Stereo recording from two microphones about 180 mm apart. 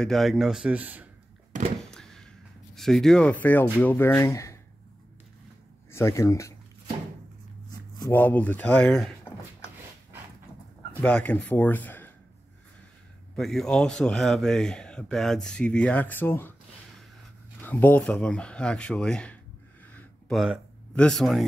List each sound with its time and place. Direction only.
0.0 s speech: centre (ahead or behind)
1.8 s a sound: 5° left (ahead or behind)
2.7 s speech: centre (ahead or behind)
5.9 s speech: 15° left (ahead or behind)
8.1 s speech: 10° left (ahead or behind)
11.0 s speech: 10° left (ahead or behind)
13.4 s speech: centre (ahead or behind)
17.6 s speech: 10° left (ahead or behind)
19.9 s a sound: 5° left (ahead or behind)